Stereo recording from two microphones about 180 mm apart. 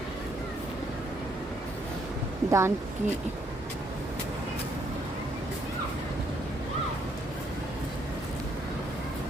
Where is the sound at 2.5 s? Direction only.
15° right (ahead or behind).